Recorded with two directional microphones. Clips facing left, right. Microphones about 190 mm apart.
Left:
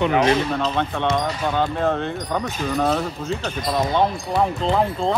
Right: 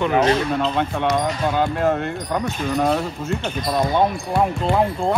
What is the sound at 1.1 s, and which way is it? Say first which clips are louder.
Speech: right 2 dB; 10° right (ahead or behind).